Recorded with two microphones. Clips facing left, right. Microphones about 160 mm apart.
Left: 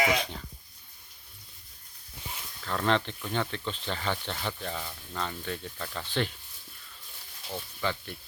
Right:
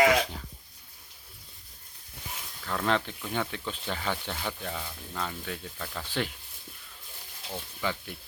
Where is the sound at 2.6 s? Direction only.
Centre (ahead or behind).